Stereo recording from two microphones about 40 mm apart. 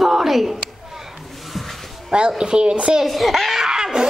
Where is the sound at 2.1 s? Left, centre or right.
Right.